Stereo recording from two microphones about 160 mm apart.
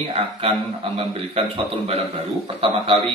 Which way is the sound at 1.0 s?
35° right (ahead or behind).